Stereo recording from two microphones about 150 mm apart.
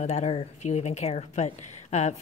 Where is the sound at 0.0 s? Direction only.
50° left (ahead or behind).